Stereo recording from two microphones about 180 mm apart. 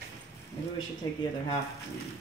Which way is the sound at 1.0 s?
20° left (ahead or behind).